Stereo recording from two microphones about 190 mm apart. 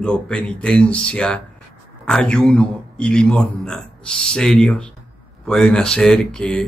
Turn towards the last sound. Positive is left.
turn(degrees=5)  # may be behind; listen again after turning